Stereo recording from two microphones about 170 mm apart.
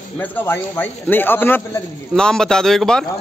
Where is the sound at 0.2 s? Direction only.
10° left (ahead or behind).